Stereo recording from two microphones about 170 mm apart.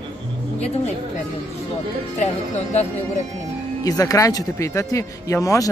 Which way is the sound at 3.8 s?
20° left (ahead or behind).